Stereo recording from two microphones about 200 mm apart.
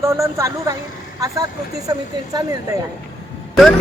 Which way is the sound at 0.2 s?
15° right (ahead or behind).